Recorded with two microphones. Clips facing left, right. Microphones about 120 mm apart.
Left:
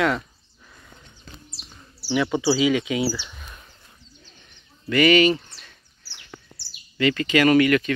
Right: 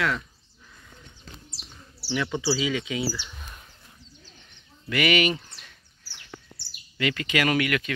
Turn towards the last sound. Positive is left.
turn(degrees=-5)  # may be behind; listen again after turning